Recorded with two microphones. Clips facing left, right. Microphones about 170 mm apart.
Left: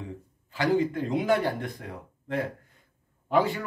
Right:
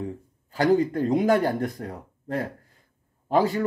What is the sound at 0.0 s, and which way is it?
A man's voice, 45° right (ahead or behind).